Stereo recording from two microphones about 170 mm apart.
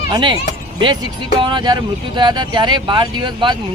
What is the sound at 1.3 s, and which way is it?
Speech, 30° right (ahead or behind).